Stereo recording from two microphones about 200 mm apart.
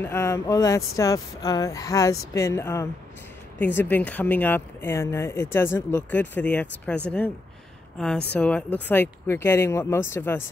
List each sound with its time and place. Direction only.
0.0 s speech: 15° left (ahead or behind)
8.3 s speech: 5° left (ahead or behind)